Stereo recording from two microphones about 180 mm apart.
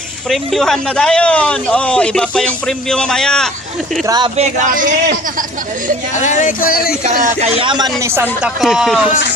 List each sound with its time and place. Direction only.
0.3 s a man's voice: centre (ahead or behind)
4.0 s a man's voice: 20° right (ahead or behind)
4.4 s a man's voice: 40° right (ahead or behind)
6.1 s speech: 45° left (ahead or behind)
7.0 s speech: 40° right (ahead or behind); by 7.9 s 25° right (ahead or behind)
8.0 s speech: 10° right (ahead or behind)
8.6 s a man's voice: centre (ahead or behind)